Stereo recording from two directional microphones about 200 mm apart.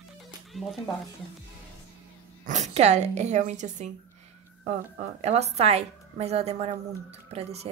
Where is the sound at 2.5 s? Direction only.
35° right (ahead or behind).